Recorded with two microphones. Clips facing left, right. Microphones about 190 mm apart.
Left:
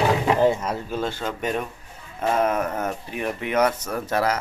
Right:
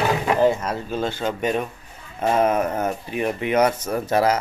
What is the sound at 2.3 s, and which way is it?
Speech, 20° right (ahead or behind).